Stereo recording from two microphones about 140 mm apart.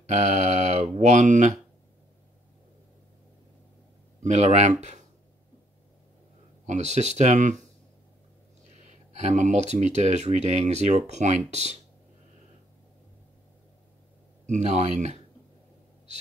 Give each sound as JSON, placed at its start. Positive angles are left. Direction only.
{"t": 0.0, "sound": "speech", "side_deg": -55}
{"t": 4.2, "sound": "speech", "side_deg": -55}
{"t": 6.6, "sound": "speech", "side_deg": -55}
{"t": 8.8, "sound": "speech", "side_deg": -55}
{"t": 14.4, "sound": "speech", "side_deg": -55}